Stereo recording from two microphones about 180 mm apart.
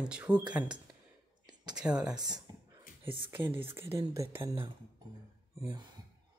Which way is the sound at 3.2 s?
10° right (ahead or behind).